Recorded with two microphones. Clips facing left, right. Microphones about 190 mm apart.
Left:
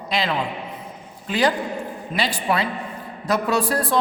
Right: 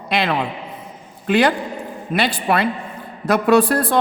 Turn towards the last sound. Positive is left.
turn(degrees=-60)  # may be behind; listen again after turning